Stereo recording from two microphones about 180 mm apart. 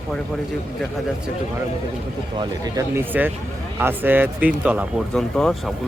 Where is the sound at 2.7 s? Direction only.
10° right (ahead or behind).